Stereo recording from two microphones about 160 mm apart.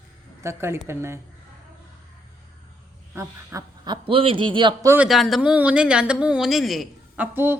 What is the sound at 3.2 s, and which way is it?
A man's voice, 25° right (ahead or behind).